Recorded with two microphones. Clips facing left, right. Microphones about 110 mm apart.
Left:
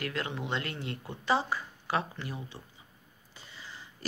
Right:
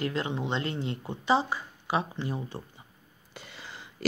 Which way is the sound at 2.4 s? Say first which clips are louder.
Right 7 dB; 45° right (ahead or behind).